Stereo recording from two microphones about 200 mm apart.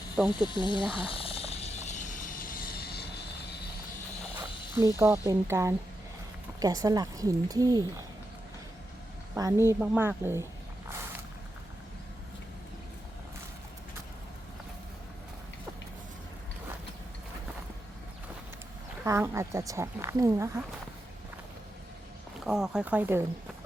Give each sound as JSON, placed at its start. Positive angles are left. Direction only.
{"t": 0.2, "sound": "speech", "side_deg": 0}
{"t": 0.4, "sound": "speech", "side_deg": 25}
{"t": 0.9, "sound": "a sound", "side_deg": 25}
{"t": 4.4, "sound": "speech", "side_deg": -15}
{"t": 9.3, "sound": "speech", "side_deg": -10}
{"t": 19.0, "sound": "speech", "side_deg": -15}
{"t": 22.4, "sound": "speech", "side_deg": -5}